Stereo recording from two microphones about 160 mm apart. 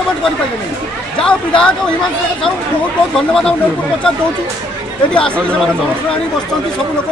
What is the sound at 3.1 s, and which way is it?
Speech, 5° left (ahead or behind).